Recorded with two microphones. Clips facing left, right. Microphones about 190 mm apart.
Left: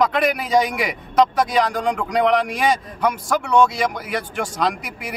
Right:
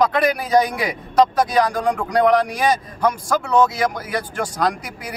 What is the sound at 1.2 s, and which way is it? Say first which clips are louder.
A man's voice: right 1 dB; centre (ahead or behind).